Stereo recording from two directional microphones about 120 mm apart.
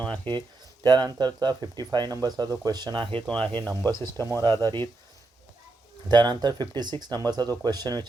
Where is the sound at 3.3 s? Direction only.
5° left (ahead or behind).